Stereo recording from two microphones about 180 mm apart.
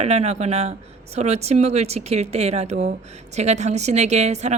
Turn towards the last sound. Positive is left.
turn(degrees=-40)  # may be behind; listen again after turning